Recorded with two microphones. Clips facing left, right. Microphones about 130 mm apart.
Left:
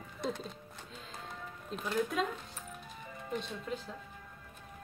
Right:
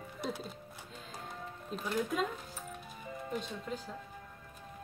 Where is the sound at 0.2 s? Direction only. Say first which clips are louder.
Left 2 dB; 5° right (ahead or behind).